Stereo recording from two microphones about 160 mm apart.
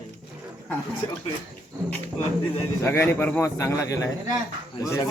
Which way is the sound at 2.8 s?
15° left (ahead or behind).